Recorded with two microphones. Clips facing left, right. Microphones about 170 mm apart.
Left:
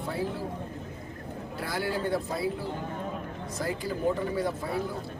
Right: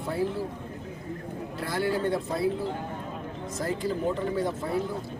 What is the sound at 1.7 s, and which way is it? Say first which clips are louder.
Speech: right 3 dB; 5° left (ahead or behind).